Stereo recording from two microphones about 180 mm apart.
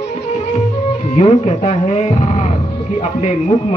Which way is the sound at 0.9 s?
35° left (ahead or behind).